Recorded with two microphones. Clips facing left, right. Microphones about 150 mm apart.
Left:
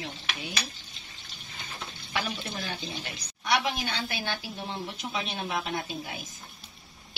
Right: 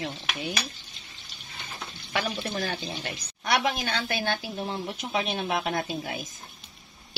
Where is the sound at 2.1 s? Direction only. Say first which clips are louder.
Right 4 dB; 50° right (ahead or behind).